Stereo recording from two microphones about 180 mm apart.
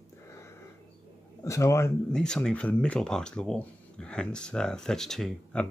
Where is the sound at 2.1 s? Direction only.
5° left (ahead or behind).